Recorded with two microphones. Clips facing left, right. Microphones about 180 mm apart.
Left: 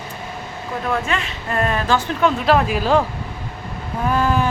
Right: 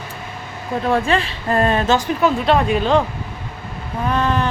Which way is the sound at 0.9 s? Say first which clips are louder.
Right 5 dB; 30° right (ahead or behind).